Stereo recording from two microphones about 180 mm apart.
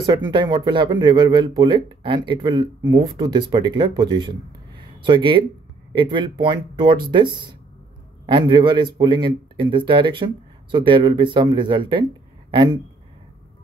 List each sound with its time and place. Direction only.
0.0 s speech: 25° right (ahead or behind)